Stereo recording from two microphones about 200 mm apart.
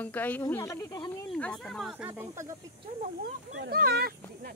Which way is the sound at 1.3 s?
5° left (ahead or behind).